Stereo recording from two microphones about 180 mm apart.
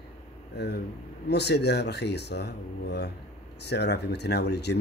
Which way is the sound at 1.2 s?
70° left (ahead or behind).